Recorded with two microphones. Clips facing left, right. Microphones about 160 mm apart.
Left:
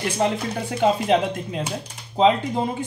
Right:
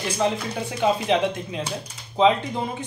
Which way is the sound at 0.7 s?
50° left (ahead or behind).